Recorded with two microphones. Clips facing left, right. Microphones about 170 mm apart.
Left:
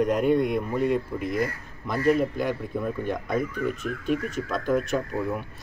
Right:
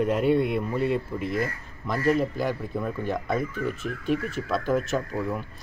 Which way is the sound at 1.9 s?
5° left (ahead or behind).